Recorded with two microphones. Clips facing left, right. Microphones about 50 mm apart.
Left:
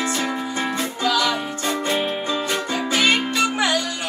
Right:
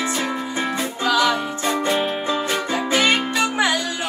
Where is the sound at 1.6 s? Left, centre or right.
Centre.